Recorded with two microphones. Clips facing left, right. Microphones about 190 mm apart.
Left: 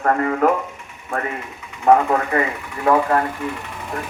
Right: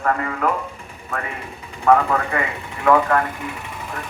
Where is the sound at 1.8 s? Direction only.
35° left (ahead or behind).